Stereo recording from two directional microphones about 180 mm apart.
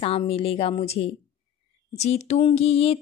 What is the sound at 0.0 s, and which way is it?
Speech, 35° left (ahead or behind).